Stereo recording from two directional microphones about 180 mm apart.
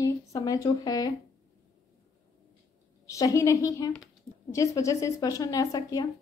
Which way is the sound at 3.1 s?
20° left (ahead or behind).